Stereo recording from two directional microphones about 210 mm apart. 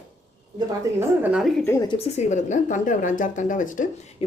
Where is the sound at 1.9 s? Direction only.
30° left (ahead or behind).